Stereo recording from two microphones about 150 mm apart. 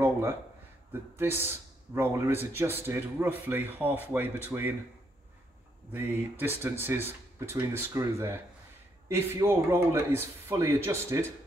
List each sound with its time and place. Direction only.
0.0 s a sound: 15° right (ahead or behind)
1.1 s a man's voice: 15° right (ahead or behind)
5.9 s a man's voice: 15° right (ahead or behind)